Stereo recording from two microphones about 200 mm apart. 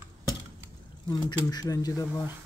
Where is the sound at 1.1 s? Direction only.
20° left (ahead or behind).